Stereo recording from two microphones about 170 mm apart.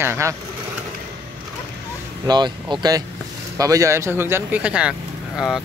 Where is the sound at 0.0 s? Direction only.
15° right (ahead or behind).